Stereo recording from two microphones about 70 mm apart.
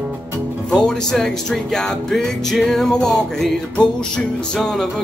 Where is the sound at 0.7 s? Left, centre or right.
Centre.